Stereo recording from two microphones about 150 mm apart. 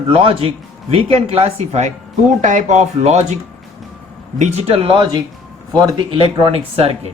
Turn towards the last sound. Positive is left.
turn(degrees=-40)  # may be behind; listen again after turning